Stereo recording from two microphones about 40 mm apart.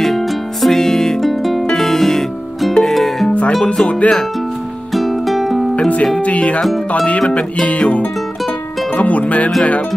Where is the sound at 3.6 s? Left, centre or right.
Left.